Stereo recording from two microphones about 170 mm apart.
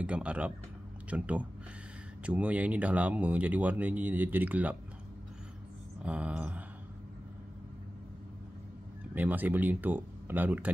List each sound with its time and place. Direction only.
0.0 s speech: 5° right (ahead or behind)
6.0 s speech: 5° right (ahead or behind)
9.1 s speech: 10° right (ahead or behind)